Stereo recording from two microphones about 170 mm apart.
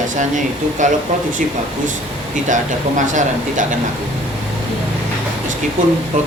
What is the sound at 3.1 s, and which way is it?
Speech, 50° right (ahead or behind).